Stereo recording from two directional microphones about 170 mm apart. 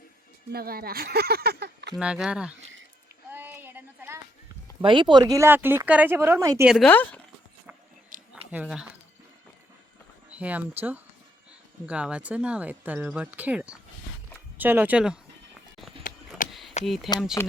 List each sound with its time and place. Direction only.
0.5 s speech: 60° right (ahead or behind)
2.0 s speech: 5° right (ahead or behind)
3.3 s a sound: 10° right (ahead or behind)
4.8 s speech: 30° right (ahead or behind)
6.8 s speech: 10° left (ahead or behind)
8.1 s a sound: 50° right (ahead or behind)
8.5 s speech: 5° right (ahead or behind)
10.3 s speech: 10° right (ahead or behind)
16.1 s a sound: 50° left (ahead or behind)
16.5 s a sound: centre (ahead or behind)
16.8 s speech: centre (ahead or behind)
17.4 s speech: 15° left (ahead or behind)